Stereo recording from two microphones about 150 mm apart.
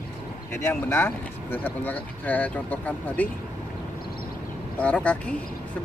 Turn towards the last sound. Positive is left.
turn(degrees=10)  # may be behind; listen again after turning